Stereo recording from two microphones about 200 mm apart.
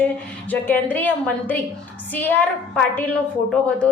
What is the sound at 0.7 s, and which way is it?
A woman's voice, 10° left (ahead or behind).